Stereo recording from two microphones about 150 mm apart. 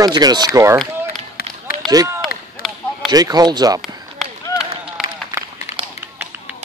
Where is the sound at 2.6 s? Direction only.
90° left.